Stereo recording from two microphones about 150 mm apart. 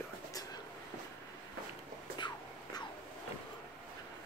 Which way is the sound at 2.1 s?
30° left (ahead or behind).